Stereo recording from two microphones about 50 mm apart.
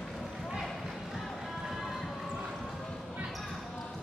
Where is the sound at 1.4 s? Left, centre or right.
Centre.